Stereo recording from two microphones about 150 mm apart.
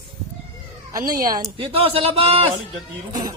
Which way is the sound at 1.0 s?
70° right (ahead or behind).